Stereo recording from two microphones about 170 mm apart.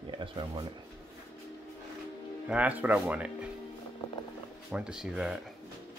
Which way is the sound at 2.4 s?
10° right (ahead or behind).